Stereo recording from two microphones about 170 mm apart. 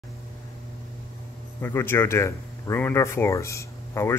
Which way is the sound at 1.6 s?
15° left (ahead or behind).